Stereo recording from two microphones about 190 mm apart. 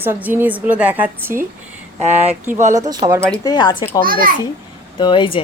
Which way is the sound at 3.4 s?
25° left (ahead or behind).